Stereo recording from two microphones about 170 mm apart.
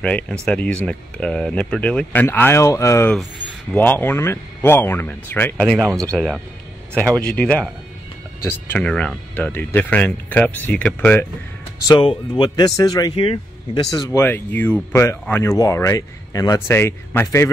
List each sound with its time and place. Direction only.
0.0 s speech: 5° left (ahead or behind)
11.9 s speech: 30° left (ahead or behind)
13.8 s speech: 20° left (ahead or behind)